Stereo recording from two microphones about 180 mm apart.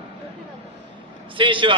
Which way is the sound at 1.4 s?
30° right (ahead or behind).